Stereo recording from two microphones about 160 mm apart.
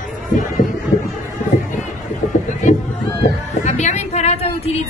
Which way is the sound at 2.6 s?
50° left (ahead or behind).